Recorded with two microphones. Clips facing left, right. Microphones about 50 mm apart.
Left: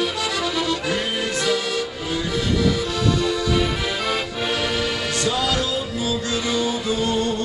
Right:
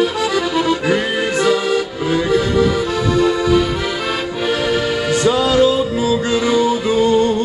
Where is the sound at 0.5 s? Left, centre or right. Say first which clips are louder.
Right 7 dB; right.